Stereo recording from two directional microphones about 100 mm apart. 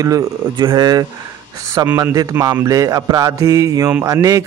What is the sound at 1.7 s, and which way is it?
Speech, 20° right (ahead or behind).